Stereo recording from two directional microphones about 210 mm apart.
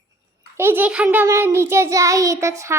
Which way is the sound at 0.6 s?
10° right (ahead or behind).